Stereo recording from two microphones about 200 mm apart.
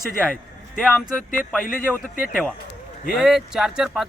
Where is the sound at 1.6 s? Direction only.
45° left (ahead or behind).